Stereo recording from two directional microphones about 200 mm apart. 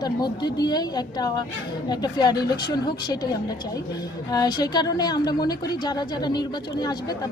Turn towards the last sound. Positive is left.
turn(degrees=20)  # may be behind; listen again after turning